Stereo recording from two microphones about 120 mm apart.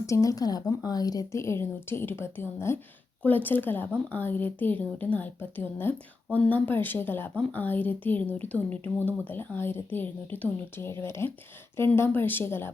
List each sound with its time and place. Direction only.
0.0 s speech: 25° left (ahead or behind)